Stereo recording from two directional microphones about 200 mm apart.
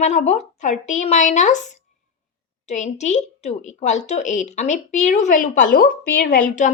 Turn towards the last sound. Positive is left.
turn(degrees=40)  # may be behind; listen again after turning